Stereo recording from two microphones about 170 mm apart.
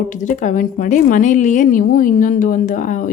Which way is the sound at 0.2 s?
50° left (ahead or behind).